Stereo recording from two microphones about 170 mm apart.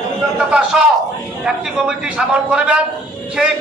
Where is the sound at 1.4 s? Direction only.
5° right (ahead or behind).